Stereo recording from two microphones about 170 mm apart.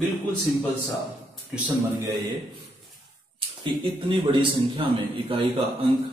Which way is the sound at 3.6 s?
30° right (ahead or behind).